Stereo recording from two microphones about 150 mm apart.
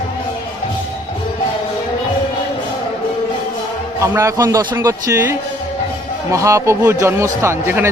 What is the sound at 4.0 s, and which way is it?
A man's voice, 20° right (ahead or behind).